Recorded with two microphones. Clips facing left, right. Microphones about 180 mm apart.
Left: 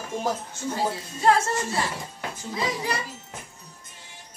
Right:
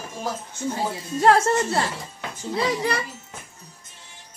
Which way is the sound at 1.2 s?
65° right (ahead or behind).